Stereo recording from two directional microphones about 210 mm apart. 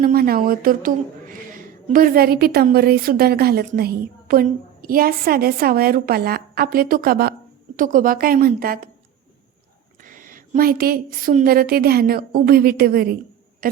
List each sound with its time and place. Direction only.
0.0 s a woman's voice: 45° right (ahead or behind)
10.0 s a woman's voice: 40° right (ahead or behind)